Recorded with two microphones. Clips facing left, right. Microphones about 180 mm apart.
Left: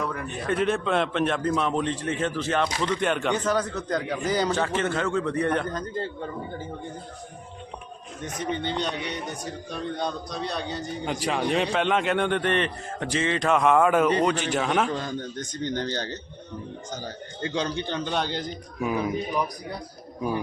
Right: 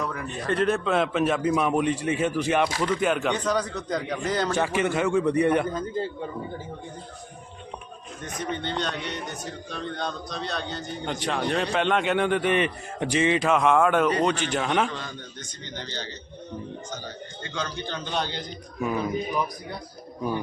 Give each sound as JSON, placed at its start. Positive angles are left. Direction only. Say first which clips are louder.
{"t": 0.0, "sound": "a man's voice", "louder": "even", "side_deg": 0}
{"t": 4.5, "sound": "a man's voice", "louder": "right 1 dB", "side_deg": -10}
{"t": 8.4, "sound": "a man's voice", "louder": "left 1 dB", "side_deg": 15}
{"t": 13.5, "sound": "a man's voice", "louder": "left 3 dB", "side_deg": 0}
{"t": 14.8, "sound": "a man's voice", "louder": "left 6 dB", "side_deg": 40}
{"t": 17.5, "sound": "a man's voice", "louder": "left 4 dB", "side_deg": 30}
{"t": 18.8, "sound": "a man's voice", "louder": "even", "side_deg": 10}